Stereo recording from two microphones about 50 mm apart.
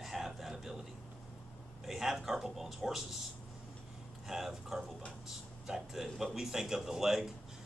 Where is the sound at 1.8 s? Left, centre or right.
Centre.